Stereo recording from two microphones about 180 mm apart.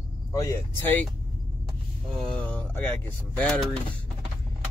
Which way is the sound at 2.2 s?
5° left (ahead or behind).